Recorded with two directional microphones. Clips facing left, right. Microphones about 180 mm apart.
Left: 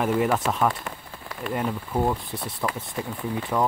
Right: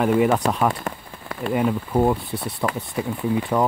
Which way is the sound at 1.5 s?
5° right (ahead or behind).